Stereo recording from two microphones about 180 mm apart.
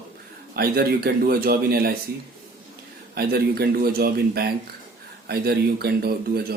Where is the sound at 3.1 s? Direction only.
60° right (ahead or behind).